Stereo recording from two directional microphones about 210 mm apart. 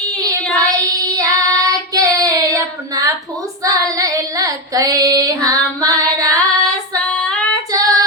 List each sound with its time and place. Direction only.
0.5 s child singing: 15° right (ahead or behind)
7.1 s female singing: 5° left (ahead or behind)
7.7 s female singing: 15° right (ahead or behind)